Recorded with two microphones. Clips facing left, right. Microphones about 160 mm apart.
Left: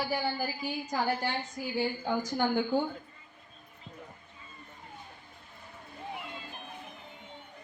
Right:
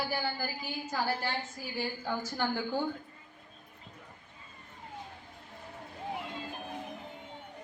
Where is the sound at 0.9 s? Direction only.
20° left (ahead or behind).